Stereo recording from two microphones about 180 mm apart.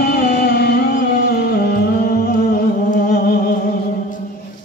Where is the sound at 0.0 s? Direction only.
60° left (ahead or behind).